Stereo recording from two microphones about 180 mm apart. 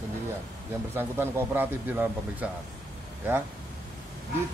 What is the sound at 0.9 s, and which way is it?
Speech, 10° right (ahead or behind).